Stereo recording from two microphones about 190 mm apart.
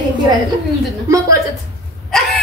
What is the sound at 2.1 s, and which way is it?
Dog, centre (ahead or behind).